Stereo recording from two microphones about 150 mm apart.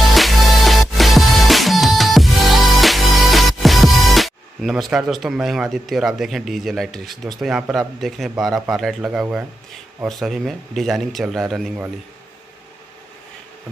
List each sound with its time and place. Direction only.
0.1 s music: centre (ahead or behind)
8.0 s speech: centre (ahead or behind)